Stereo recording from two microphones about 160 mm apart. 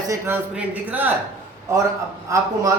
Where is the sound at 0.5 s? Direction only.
10° right (ahead or behind).